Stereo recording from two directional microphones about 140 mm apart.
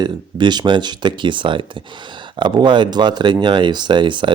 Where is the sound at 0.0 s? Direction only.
30° right (ahead or behind).